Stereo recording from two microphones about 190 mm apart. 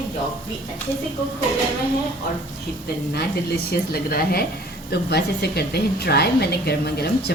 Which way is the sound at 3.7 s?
55° left (ahead or behind).